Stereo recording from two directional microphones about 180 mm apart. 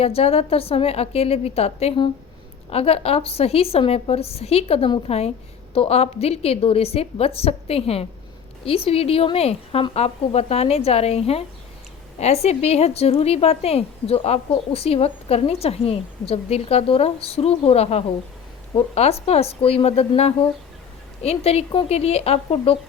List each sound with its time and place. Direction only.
0.0 s a woman's voice: 35° left (ahead or behind)